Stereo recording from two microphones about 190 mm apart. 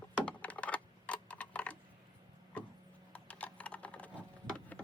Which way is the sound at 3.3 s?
5° left (ahead or behind).